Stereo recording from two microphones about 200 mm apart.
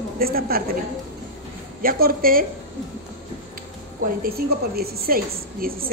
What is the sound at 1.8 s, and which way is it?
Speech, 45° right (ahead or behind).